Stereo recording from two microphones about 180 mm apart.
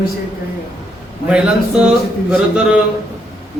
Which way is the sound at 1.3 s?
5° right (ahead or behind).